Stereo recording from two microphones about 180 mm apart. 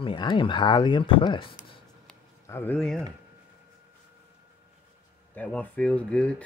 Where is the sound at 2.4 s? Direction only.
10° left (ahead or behind).